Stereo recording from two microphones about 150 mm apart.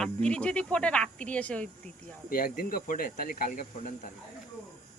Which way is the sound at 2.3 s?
75° left (ahead or behind).